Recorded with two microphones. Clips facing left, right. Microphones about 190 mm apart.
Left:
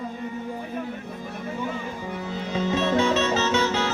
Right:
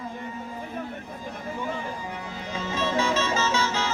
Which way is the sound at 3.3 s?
65° left (ahead or behind).